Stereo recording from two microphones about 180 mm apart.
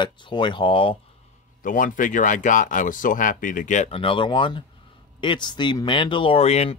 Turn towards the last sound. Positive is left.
turn(degrees=35)  # may be behind; listen again after turning